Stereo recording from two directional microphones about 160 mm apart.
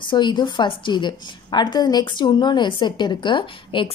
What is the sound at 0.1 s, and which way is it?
A woman's voice, 30° left (ahead or behind).